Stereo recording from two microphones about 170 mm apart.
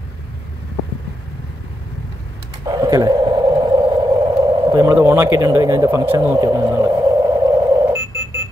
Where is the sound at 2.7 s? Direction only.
20° right (ahead or behind).